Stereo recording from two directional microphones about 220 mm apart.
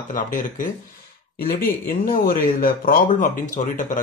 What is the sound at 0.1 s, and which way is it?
Speech, 35° left (ahead or behind).